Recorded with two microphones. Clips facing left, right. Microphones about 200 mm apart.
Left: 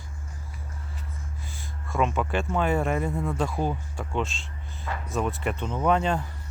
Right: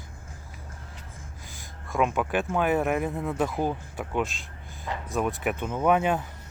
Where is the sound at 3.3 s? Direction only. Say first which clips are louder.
Right 1 dB; 20° right (ahead or behind).